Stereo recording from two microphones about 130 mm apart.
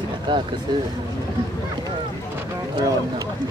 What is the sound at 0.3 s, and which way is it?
Speech, 35° right (ahead or behind).